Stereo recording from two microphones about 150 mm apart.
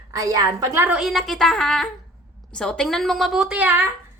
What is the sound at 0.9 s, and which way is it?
A woman's voice, centre (ahead or behind).